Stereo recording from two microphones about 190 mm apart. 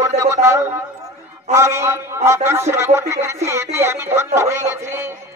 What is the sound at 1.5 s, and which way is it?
A man's voice, 15° right (ahead or behind).